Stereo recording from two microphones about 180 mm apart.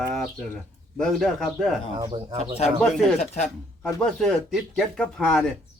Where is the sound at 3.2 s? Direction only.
40° left (ahead or behind).